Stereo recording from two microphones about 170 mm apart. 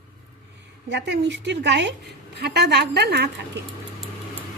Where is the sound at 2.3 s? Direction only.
75° right (ahead or behind).